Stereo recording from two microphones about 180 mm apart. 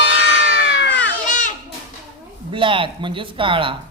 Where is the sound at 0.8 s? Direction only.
75° left (ahead or behind).